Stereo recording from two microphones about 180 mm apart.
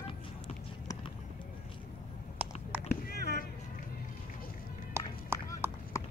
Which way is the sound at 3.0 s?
60° left (ahead or behind).